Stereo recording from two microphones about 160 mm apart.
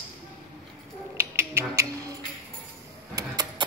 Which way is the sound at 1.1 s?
15° right (ahead or behind).